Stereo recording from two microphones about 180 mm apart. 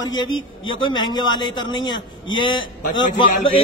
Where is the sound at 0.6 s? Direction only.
25° left (ahead or behind).